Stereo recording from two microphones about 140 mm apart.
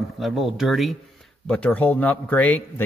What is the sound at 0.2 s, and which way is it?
Speech, centre (ahead or behind).